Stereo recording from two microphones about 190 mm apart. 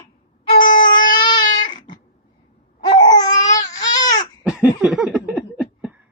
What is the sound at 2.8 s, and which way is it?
Babbling, 20° left (ahead or behind).